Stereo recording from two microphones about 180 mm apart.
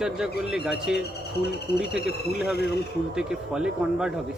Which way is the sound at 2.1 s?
Centre (ahead or behind).